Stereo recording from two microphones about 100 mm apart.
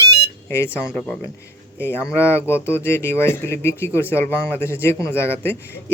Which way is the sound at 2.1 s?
25° left (ahead or behind).